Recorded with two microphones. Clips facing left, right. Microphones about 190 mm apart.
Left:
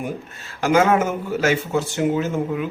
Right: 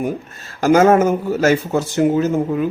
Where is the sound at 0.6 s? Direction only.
40° right (ahead or behind).